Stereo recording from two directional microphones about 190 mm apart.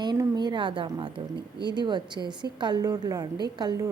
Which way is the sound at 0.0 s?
20° right (ahead or behind).